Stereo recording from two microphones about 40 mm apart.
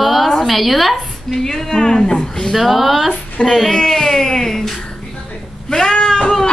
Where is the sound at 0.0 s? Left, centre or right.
Centre.